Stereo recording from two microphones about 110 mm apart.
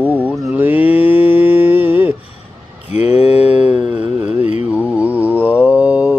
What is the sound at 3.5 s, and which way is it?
Mantra, 10° right (ahead or behind).